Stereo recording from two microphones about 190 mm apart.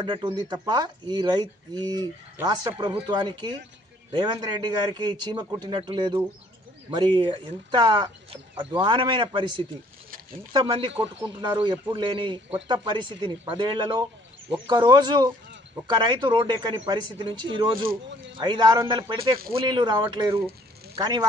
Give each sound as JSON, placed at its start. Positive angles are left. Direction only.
{"t": 0.0, "sound": "speech", "side_deg": -25}
{"t": 10.5, "sound": "speech", "side_deg": -25}